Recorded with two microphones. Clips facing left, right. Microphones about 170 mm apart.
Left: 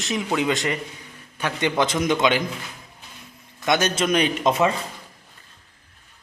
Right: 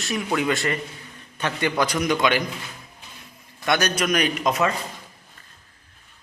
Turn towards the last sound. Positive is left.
turn(degrees=25)  # may be behind; listen again after turning